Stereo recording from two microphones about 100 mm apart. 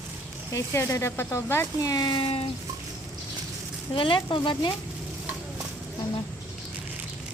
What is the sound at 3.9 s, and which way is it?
Speech, 55° left (ahead or behind).